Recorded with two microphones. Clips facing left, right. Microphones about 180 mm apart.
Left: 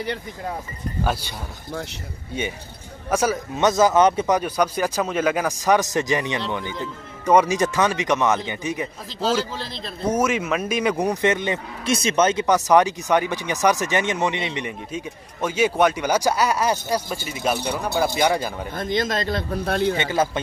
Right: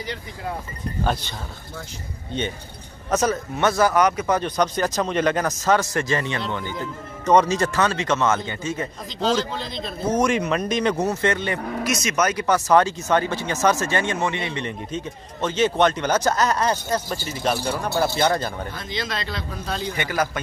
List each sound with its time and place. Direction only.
2.3 s speech: 10° left (ahead or behind); by 4.4 s 25° left (ahead or behind)
4.4 s speech: 10° left (ahead or behind)
11.8 s speech: 30° left (ahead or behind); by 18.7 s 10° left (ahead or behind)
18.7 s speech: 50° left (ahead or behind)
20.0 s speech: 25° left (ahead or behind)